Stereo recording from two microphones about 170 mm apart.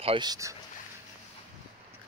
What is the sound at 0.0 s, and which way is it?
Speech, 30° right (ahead or behind).